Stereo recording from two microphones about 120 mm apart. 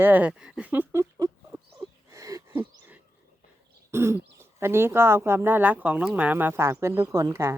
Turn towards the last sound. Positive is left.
turn(degrees=-25)  # may be behind; listen again after turning